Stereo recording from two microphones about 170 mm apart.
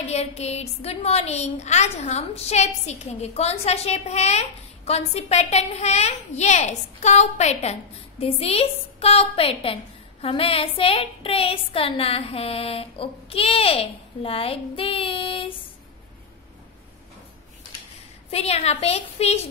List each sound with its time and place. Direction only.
0.1 s a woman's voice: 40° left (ahead or behind)
18.3 s a woman's voice: 35° left (ahead or behind)